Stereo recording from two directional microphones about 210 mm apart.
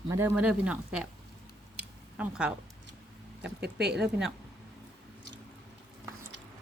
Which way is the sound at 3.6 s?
55° right (ahead or behind).